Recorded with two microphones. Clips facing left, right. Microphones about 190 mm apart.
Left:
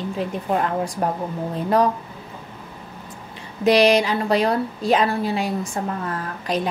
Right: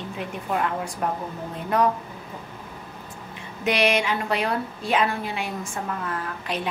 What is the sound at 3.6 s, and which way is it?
A woman's voice, 35° left (ahead or behind).